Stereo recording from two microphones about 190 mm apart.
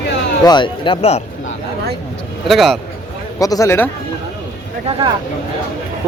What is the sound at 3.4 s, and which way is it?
Speech, 15° left (ahead or behind).